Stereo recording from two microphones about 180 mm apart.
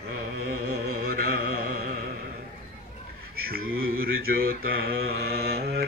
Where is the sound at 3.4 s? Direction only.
55° right (ahead or behind).